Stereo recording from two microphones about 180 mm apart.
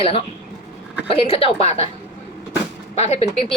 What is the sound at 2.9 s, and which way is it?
Speech, 35° left (ahead or behind).